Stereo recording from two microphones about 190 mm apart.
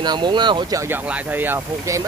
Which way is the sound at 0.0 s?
25° right (ahead or behind).